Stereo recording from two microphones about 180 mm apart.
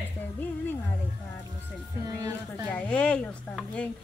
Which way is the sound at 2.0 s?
20° right (ahead or behind).